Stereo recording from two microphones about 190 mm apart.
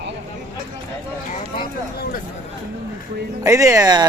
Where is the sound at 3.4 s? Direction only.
15° right (ahead or behind).